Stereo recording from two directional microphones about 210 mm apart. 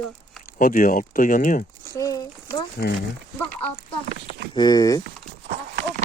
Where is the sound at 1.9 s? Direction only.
15° left (ahead or behind).